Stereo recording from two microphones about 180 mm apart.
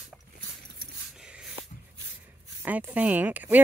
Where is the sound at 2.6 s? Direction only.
10° right (ahead or behind).